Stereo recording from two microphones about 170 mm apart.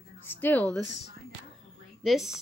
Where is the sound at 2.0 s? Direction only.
Centre (ahead or behind).